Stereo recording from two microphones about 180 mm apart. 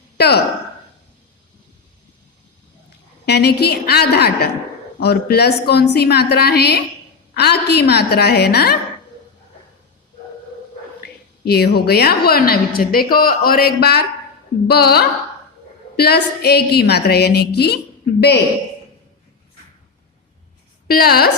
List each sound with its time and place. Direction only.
0.2 s a woman's voice: 65° left (ahead or behind)
3.2 s a woman's voice: 65° left (ahead or behind)
11.0 s a woman's voice: 60° left (ahead or behind)
20.8 s a woman's voice: 55° left (ahead or behind)